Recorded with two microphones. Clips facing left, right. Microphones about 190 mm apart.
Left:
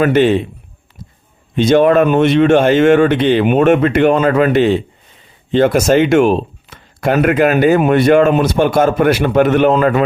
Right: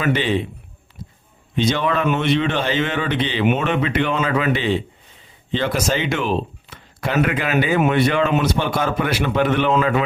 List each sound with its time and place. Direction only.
0.0 s speech: 50° left (ahead or behind)
1.5 s speech: 50° left (ahead or behind)